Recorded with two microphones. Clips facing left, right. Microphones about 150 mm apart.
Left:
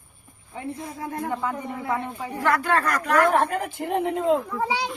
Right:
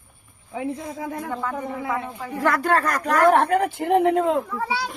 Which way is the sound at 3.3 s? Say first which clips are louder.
Right 4 dB; 65° right (ahead or behind).